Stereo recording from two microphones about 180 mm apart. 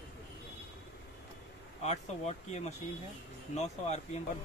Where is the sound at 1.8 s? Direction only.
40° left (ahead or behind).